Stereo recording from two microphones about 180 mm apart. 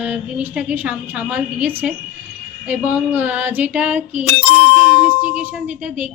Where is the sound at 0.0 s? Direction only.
10° right (ahead or behind).